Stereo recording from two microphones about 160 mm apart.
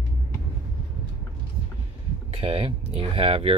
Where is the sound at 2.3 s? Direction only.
35° right (ahead or behind).